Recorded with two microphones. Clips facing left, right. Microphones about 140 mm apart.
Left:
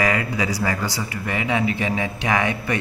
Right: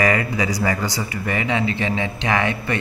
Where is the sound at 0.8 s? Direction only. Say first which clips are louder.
Right 1 dB; 15° right (ahead or behind).